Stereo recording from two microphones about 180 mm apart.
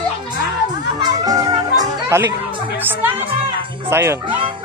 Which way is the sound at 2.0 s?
15° right (ahead or behind).